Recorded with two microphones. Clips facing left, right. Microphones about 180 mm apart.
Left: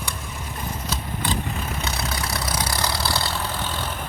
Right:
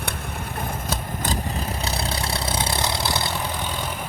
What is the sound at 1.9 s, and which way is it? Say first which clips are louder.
Vehicle: right 1 dB; 30° right (ahead or behind).